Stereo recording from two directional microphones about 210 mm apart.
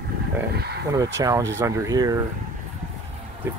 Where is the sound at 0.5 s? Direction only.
50° right (ahead or behind).